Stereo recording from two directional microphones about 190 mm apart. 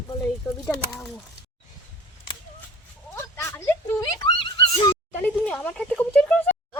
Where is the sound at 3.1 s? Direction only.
15° left (ahead or behind).